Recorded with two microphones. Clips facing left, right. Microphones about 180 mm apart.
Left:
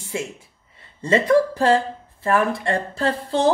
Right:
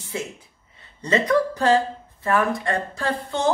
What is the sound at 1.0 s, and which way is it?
A woman's voice, 30° left (ahead or behind).